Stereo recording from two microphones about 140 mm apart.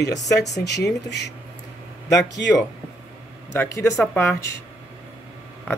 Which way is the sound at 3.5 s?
20° left (ahead or behind).